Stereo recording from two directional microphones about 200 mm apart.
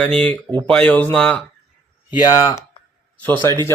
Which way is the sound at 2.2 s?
20° left (ahead or behind).